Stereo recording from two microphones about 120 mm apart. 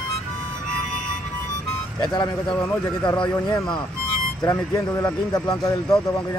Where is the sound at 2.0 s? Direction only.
35° left (ahead or behind).